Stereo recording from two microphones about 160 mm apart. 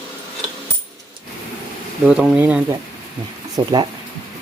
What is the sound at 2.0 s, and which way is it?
Speech, 5° right (ahead or behind).